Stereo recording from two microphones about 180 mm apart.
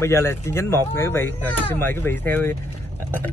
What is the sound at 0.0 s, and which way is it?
Speech, 15° left (ahead or behind).